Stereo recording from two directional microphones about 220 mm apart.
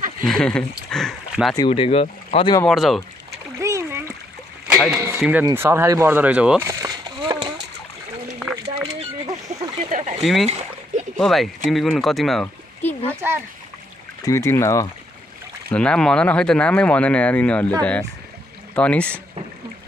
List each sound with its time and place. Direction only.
0.2 s speech: 5° left (ahead or behind)
1.5 s speech: 20° left (ahead or behind)
2.6 s speech: centre (ahead or behind)
3.5 s splash: 15° right (ahead or behind)
4.7 s speech: centre (ahead or behind)
6.7 s a sound: 15° right (ahead or behind)
8.6 s a sound: 20° right (ahead or behind)
10.2 s speech: centre (ahead or behind)
14.2 s speech: 10° left (ahead or behind)
18.8 s speech: 5° left (ahead or behind)